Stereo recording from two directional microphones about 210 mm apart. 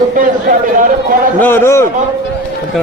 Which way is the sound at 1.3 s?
10° left (ahead or behind).